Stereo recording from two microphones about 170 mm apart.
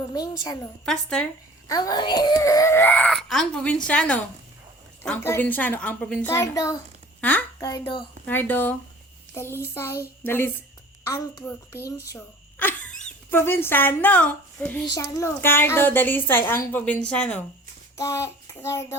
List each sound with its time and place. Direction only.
0.1 s a woman's voice: 20° left (ahead or behind)
0.9 s speech: 5° left (ahead or behind)
1.6 s a child's voice: 20° left (ahead or behind)
6.3 s a woman's voice: 20° left (ahead or behind)
7.2 s a child's voice: 10° left (ahead or behind)
7.6 s a woman's voice: 20° left (ahead or behind)
8.3 s a child's voice: 10° left (ahead or behind)
17.9 s child singing: 15° left (ahead or behind)